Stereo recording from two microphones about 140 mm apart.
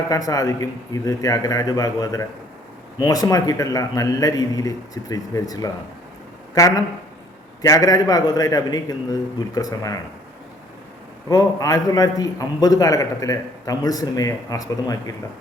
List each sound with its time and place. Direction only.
0.1 s a man's voice: 25° left (ahead or behind)
11.3 s a man's voice: 25° left (ahead or behind)